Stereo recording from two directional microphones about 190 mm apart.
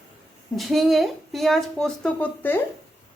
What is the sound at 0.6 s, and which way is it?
A woman's voice, centre (ahead or behind).